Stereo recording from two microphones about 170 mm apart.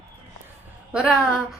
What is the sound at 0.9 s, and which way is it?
Speech, 5° right (ahead or behind).